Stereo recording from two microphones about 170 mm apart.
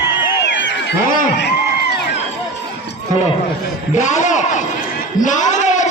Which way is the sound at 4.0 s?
45° left (ahead or behind).